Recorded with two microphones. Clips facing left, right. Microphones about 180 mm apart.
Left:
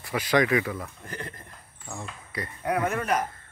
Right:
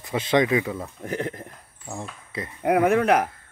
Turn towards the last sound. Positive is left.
turn(degrees=-70)  # may be behind; listen again after turning